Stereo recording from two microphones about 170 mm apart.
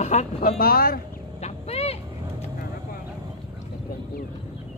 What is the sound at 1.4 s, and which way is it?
Vehicle, 35° left (ahead or behind).